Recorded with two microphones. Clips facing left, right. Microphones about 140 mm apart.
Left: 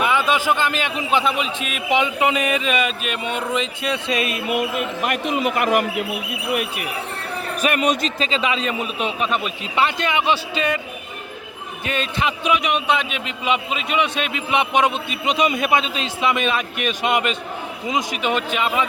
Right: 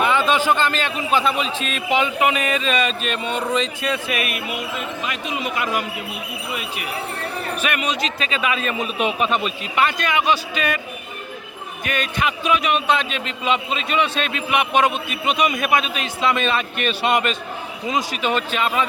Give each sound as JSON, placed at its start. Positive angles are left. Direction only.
{"t": 0.0, "sound": "a man's voice", "side_deg": 10}
{"t": 5.0, "sound": "speech", "side_deg": 55}
{"t": 7.6, "sound": "speech", "side_deg": 40}
{"t": 8.2, "sound": "a man's voice", "side_deg": 25}
{"t": 9.0, "sound": "speech", "side_deg": -5}
{"t": 9.7, "sound": "a man's voice", "side_deg": 25}
{"t": 11.9, "sound": "a man's voice", "side_deg": 25}
{"t": 16.2, "sound": "a man's voice", "side_deg": 15}